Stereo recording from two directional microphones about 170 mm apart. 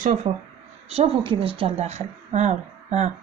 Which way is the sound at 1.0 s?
35° right (ahead or behind).